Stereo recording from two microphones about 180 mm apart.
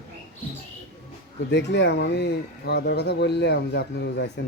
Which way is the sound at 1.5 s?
75° left (ahead or behind).